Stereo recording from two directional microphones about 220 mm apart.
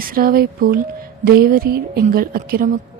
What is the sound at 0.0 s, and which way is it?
Speech, 40° right (ahead or behind).